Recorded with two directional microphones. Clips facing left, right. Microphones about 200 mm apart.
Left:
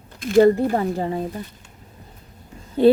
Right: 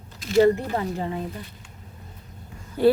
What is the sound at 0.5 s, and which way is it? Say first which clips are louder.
Speech: left 6 dB; 35° left (ahead or behind).